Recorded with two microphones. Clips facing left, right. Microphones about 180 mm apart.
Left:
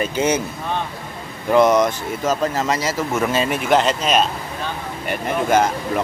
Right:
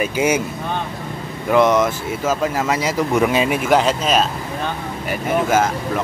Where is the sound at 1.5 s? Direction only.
Centre (ahead or behind).